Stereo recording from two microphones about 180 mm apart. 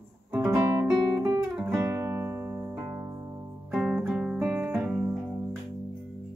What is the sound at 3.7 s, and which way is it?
Music, 5° right (ahead or behind).